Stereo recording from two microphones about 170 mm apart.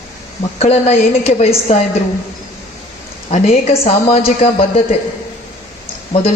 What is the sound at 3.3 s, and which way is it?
A woman's voice, 40° left (ahead or behind).